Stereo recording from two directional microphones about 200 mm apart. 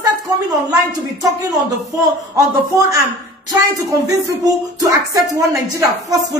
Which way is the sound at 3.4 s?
20° right (ahead or behind).